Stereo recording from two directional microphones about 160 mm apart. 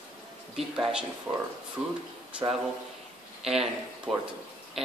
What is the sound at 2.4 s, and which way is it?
Speech, 25° right (ahead or behind).